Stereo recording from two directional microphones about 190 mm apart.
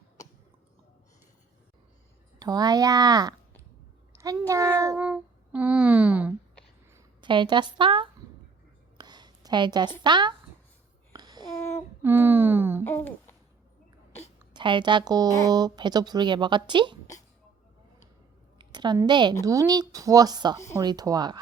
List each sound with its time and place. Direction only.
2.4 s a woman's voice: 20° right (ahead or behind)
4.9 s speech: 5° right (ahead or behind)
6.9 s a woman's voice: 25° right (ahead or behind)
9.0 s a sound: 20° right (ahead or behind)
10.0 s a woman's voice: 25° right (ahead or behind)
11.1 s babbling: 20° right (ahead or behind)
12.0 s speech: 10° right (ahead or behind)
12.8 s a child's voice: 10° left (ahead or behind)
14.5 s a woman's voice: 25° right (ahead or behind)
18.6 s a woman's voice: 25° right (ahead or behind)